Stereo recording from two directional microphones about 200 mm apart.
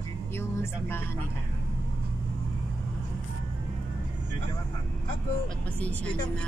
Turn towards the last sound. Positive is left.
turn(degrees=5)  # may be behind; listen again after turning